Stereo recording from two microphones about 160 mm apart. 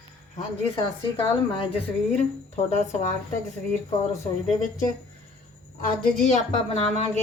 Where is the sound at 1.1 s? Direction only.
35° left (ahead or behind).